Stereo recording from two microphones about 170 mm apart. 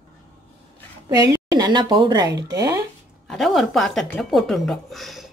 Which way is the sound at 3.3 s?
Centre (ahead or behind).